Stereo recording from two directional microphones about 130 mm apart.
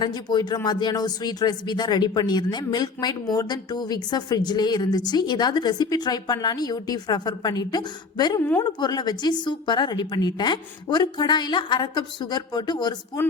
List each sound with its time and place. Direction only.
0.0 s a woman's voice: 35° left (ahead or behind)
8.4 s a woman's voice: 15° left (ahead or behind)
8.6 s a woman's voice: 35° left (ahead or behind)